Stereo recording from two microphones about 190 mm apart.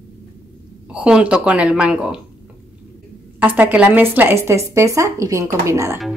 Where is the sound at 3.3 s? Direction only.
10° right (ahead or behind).